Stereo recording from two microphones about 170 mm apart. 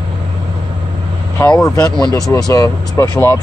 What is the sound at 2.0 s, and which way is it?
Speech, 20° left (ahead or behind).